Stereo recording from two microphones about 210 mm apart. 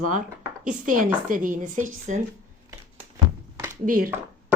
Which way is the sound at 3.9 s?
45° right (ahead or behind).